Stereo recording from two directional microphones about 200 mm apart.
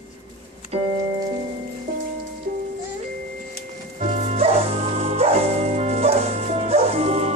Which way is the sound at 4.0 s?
30° right (ahead or behind).